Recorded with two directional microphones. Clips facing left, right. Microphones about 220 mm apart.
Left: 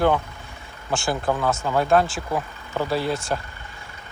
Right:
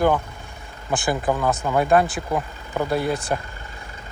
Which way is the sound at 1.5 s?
15° right (ahead or behind).